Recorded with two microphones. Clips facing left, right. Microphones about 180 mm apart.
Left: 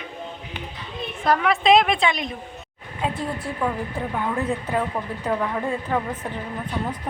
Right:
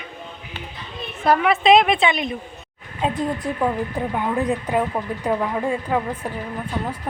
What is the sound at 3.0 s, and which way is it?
A woman's voice, 20° right (ahead or behind).